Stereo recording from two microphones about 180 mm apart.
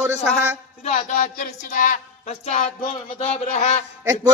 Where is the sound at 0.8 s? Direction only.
45° left (ahead or behind).